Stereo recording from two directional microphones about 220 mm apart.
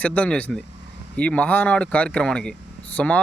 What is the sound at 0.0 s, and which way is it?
Speech, 5° left (ahead or behind).